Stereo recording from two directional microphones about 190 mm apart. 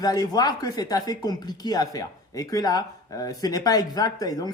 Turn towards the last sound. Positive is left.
turn(degrees=20)  # may be behind; listen again after turning